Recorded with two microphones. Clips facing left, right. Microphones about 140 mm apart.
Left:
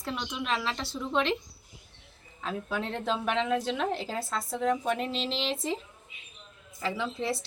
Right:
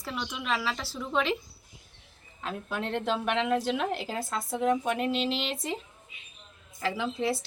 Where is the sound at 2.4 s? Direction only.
Centre (ahead or behind).